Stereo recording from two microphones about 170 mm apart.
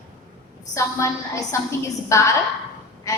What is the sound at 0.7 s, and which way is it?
A woman's voice, 15° left (ahead or behind).